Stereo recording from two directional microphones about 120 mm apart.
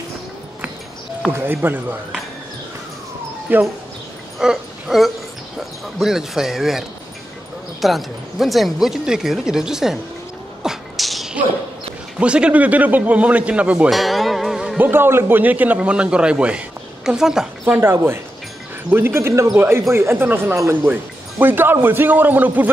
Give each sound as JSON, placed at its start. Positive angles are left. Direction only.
{"t": 1.3, "sound": "a man's voice", "side_deg": -15}
{"t": 3.5, "sound": "a man's voice", "side_deg": -15}
{"t": 4.4, "sound": "a sound", "side_deg": -5}
{"t": 5.6, "sound": "speech", "side_deg": 0}
{"t": 7.8, "sound": "speech", "side_deg": 0}
{"t": 10.6, "sound": "sneeze", "side_deg": 0}
{"t": 12.2, "sound": "a man's voice", "side_deg": -10}
{"t": 13.9, "sound": "music", "side_deg": 0}
{"t": 14.8, "sound": "a man's voice", "side_deg": -20}
{"t": 18.9, "sound": "a man's voice", "side_deg": -20}